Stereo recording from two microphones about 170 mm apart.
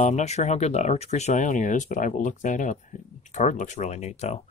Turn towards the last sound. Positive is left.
turn(degrees=40)  # may be behind; listen again after turning